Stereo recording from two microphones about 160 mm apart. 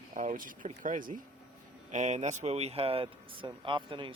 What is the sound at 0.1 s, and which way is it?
Speech, 55° right (ahead or behind).